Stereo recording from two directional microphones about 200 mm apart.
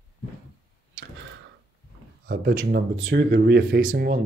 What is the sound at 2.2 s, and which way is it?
Speech, 50° right (ahead or behind).